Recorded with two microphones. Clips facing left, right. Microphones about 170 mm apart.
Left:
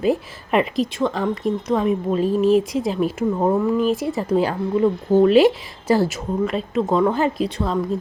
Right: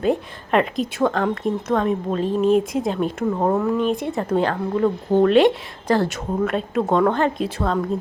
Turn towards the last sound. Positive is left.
turn(degrees=5)  # may be behind; listen again after turning